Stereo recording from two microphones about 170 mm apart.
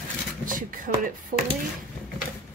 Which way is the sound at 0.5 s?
55° right (ahead or behind).